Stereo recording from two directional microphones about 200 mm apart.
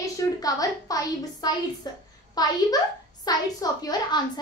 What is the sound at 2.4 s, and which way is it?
A woman's voice, 20° left (ahead or behind).